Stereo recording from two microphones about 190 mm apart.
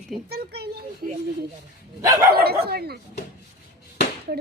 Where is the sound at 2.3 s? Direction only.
55° right (ahead or behind).